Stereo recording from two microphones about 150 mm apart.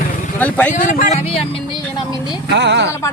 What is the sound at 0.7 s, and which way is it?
Speech, 60° left (ahead or behind).